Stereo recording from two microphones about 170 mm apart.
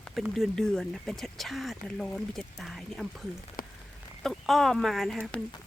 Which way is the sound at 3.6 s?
55° left (ahead or behind).